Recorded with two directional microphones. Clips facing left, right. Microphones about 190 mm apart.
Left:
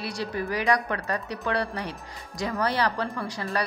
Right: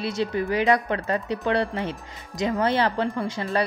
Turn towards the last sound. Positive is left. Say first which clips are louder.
# right 5 dB
turn(degrees=-20)  # may be behind; listen again after turning